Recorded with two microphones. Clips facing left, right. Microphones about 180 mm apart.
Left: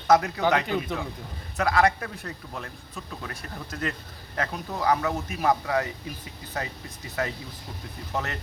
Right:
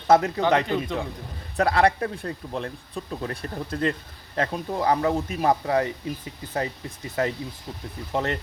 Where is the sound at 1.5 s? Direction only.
30° right (ahead or behind).